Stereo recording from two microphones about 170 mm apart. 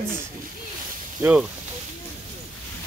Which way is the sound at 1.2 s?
5° right (ahead or behind).